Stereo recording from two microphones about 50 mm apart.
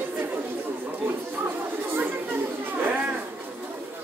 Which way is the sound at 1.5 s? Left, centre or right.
Right.